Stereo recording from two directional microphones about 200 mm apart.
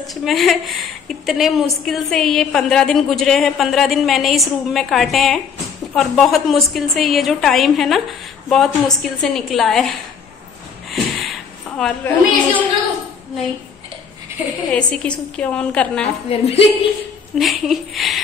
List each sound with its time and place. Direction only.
0.0 s a woman's voice: centre (ahead or behind)
10.9 s a sound: centre (ahead or behind)
14.7 s a woman's voice: 5° left (ahead or behind)
16.3 s a woman's voice: 30° left (ahead or behind)
17.4 s a woman's voice: centre (ahead or behind)